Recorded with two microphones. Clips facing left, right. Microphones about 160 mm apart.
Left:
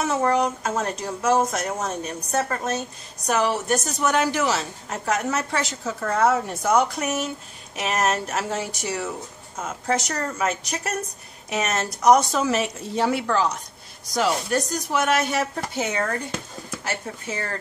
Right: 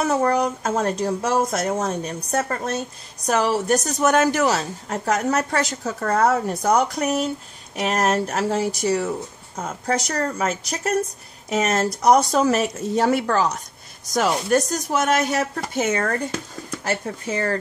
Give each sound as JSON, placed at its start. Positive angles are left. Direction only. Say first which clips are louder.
{"t": 0.0, "sound": "a woman's voice", "louder": "right 2 dB", "side_deg": -40}
{"t": 3.3, "sound": "a woman's voice", "louder": "right 2 dB", "side_deg": -40}